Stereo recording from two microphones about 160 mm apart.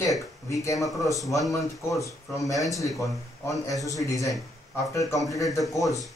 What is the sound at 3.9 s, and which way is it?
Speech, 20° left (ahead or behind).